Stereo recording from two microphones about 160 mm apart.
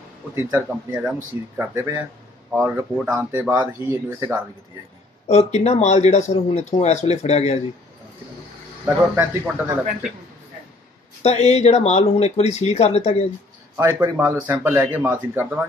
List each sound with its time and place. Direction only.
0.3 s speech: 15° right (ahead or behind)
5.3 s speech: 40° left (ahead or behind)
8.8 s speech: 15° right (ahead or behind)
11.2 s speech: 40° left (ahead or behind)
13.7 s speech: 15° right (ahead or behind)